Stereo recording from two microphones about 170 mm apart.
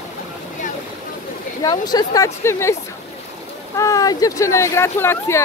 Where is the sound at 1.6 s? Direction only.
25° left (ahead or behind).